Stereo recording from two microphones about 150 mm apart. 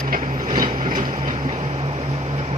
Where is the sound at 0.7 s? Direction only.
30° right (ahead or behind).